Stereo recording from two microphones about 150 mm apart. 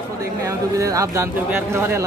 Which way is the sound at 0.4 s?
20° right (ahead or behind).